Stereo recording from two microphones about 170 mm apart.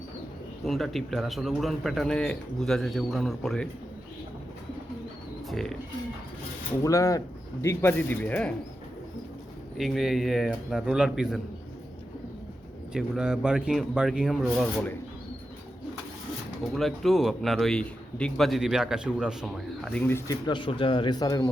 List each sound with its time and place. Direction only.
0.6 s a man's voice: centre (ahead or behind)
5.5 s bird: centre (ahead or behind)
6.8 s speech: 20° left (ahead or behind)
9.7 s a man's voice: centre (ahead or behind)
12.9 s a man's voice: 5° right (ahead or behind)
16.7 s a man's voice: centre (ahead or behind); by 21.5 s 20° left (ahead or behind)